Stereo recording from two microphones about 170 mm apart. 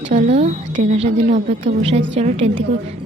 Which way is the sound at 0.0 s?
45° right (ahead or behind).